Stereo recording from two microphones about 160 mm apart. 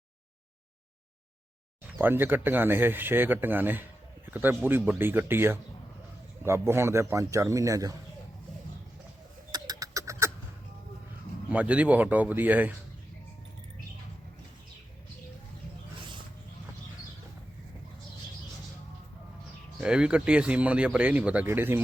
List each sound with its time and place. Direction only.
1.9 s a man's voice: 10° right (ahead or behind)
9.5 s a sound: 25° right (ahead or behind)
11.4 s speech: 10° right (ahead or behind)
16.0 s wild animals: 30° right (ahead or behind)
19.8 s speech: 5° right (ahead or behind)